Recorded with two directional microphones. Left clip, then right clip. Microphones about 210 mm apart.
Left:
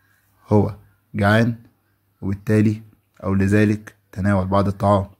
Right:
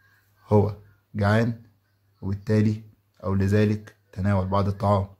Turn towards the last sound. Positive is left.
turn(degrees=20)  # may be behind; listen again after turning